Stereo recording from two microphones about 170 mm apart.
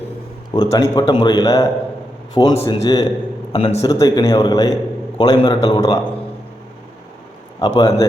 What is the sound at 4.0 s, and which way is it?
A man's voice, 20° left (ahead or behind).